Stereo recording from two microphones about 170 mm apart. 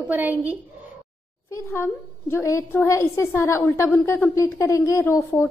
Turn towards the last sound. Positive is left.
turn(degrees=15)  # may be behind; listen again after turning